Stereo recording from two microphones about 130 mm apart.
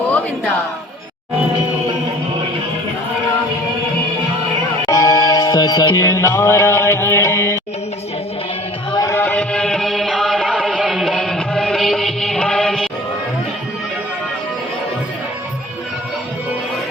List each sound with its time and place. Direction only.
4.9 s music: 25° left (ahead or behind)
9.0 s music: 25° left (ahead or behind)
9.2 s music: 10° left (ahead or behind)